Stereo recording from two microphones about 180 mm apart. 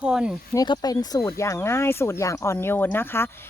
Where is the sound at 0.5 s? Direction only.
20° left (ahead or behind).